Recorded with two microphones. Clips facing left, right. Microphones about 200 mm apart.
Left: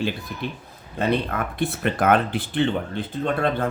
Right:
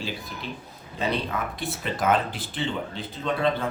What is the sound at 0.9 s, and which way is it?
A man's voice, 55° left (ahead or behind).